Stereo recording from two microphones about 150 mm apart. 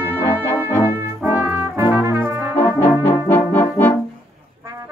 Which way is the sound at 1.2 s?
10° right (ahead or behind).